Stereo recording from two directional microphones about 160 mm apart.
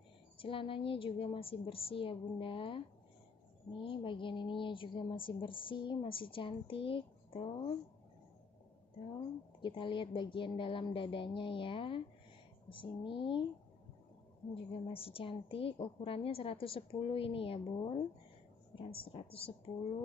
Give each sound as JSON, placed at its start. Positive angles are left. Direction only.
{"t": 0.4, "sound": "a woman's voice", "side_deg": 35}
{"t": 3.8, "sound": "a woman's voice", "side_deg": 30}
{"t": 9.6, "sound": "a woman's voice", "side_deg": 30}
{"t": 14.5, "sound": "a woman's voice", "side_deg": 35}